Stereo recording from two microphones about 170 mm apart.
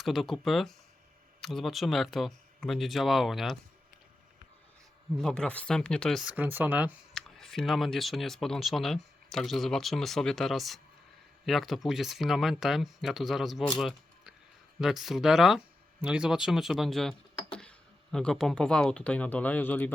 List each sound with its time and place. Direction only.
0.0 s speech: centre (ahead or behind)
5.1 s speech: 5° left (ahead or behind)
7.1 s speech: centre (ahead or behind)